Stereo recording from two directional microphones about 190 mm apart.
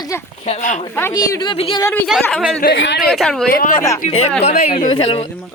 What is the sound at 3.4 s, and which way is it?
Speech, 50° left (ahead or behind).